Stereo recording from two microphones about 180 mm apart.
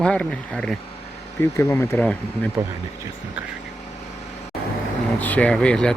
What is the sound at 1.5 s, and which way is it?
Speech, 15° left (ahead or behind).